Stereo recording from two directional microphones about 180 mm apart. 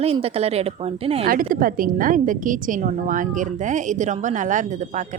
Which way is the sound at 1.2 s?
50° right (ahead or behind).